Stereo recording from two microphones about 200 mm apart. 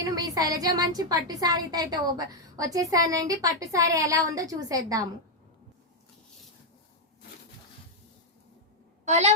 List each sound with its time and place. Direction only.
0.0 s a woman's voice: 20° right (ahead or behind)
9.0 s a child's voice: 35° right (ahead or behind)